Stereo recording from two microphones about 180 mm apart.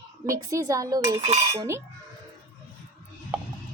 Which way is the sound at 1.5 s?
15° right (ahead or behind).